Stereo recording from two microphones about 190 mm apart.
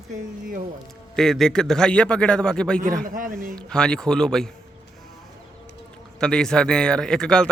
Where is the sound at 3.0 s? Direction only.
45° right (ahead or behind).